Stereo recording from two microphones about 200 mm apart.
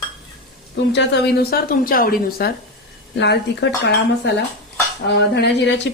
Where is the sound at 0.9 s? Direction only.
60° left (ahead or behind).